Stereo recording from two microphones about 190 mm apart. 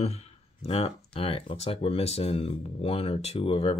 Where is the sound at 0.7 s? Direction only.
30° left (ahead or behind).